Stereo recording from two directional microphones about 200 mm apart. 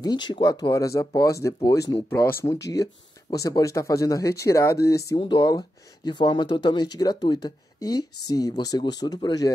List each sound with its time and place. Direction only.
0.0 s speech: 20° left (ahead or behind)